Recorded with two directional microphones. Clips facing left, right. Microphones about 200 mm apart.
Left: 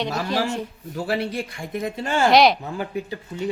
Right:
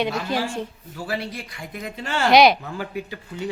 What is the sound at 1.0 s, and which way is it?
Speech, 60° left (ahead or behind).